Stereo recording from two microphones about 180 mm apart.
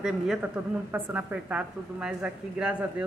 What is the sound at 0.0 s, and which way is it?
A woman's voice, 5° right (ahead or behind).